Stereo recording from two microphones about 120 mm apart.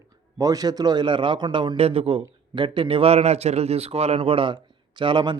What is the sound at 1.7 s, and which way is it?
A man's voice, 55° right (ahead or behind).